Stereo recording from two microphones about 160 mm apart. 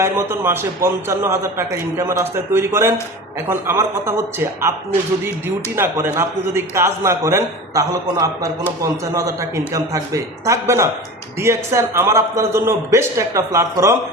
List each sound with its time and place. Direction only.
0.0 s a man's voice: 15° right (ahead or behind)